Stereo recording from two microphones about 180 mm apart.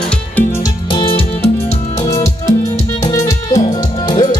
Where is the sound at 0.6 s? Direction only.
25° left (ahead or behind).